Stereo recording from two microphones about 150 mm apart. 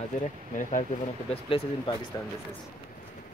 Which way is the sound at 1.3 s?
35° left (ahead or behind).